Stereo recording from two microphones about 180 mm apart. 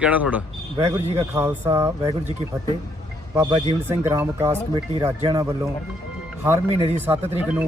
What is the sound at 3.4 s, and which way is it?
Speech, 25° right (ahead or behind).